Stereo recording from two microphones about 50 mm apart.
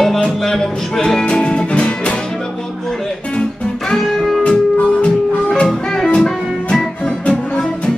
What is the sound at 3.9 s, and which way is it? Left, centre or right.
Music, centre.